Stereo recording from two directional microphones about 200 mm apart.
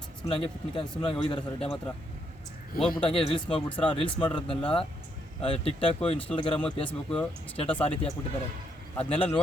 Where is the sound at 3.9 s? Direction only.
25° left (ahead or behind).